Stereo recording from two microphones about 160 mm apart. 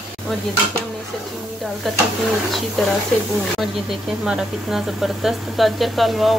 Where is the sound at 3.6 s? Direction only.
Centre (ahead or behind).